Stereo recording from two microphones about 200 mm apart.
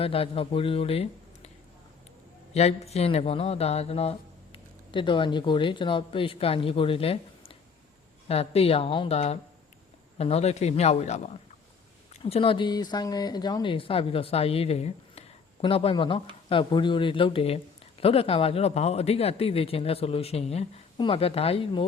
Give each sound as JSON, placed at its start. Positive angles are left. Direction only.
{"t": 0.0, "sound": "speech", "side_deg": 30}
{"t": 2.5, "sound": "speech", "side_deg": 30}